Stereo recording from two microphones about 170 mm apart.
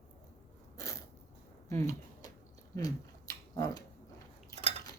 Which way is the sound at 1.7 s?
15° left (ahead or behind).